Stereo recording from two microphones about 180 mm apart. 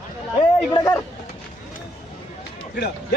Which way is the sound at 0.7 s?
15° left (ahead or behind).